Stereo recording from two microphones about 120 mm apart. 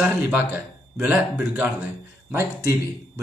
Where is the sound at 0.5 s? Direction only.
15° right (ahead or behind).